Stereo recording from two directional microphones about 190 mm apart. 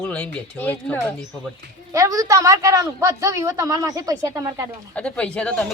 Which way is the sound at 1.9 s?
20° right (ahead or behind).